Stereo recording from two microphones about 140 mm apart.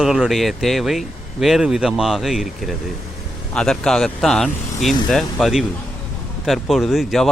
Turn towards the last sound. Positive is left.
turn(degrees=0)  # may be behind; listen again after turning